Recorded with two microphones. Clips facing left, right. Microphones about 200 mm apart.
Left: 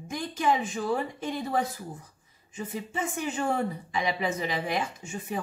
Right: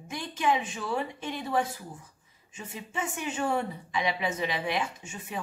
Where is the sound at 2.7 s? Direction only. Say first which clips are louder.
Left 2 dB; 40° left (ahead or behind).